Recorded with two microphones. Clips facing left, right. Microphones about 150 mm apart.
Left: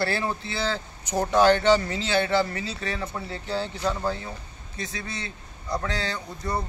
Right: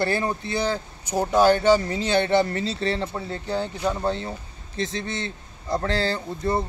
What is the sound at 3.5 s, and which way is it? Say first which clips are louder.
Speech: right 2 dB; 15° right (ahead or behind).